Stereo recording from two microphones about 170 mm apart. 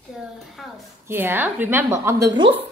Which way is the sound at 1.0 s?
15° right (ahead or behind).